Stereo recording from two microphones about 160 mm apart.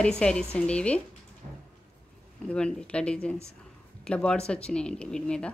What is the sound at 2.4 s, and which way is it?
A woman's voice, 5° left (ahead or behind).